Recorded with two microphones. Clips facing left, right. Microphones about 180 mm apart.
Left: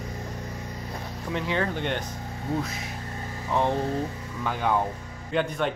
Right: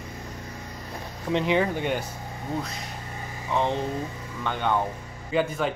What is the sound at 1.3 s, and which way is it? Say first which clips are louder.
A man's voice: right 5 dB; 20° right (ahead or behind).